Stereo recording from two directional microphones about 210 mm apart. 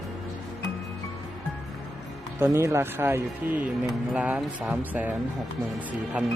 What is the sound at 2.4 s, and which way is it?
Speech, 10° right (ahead or behind).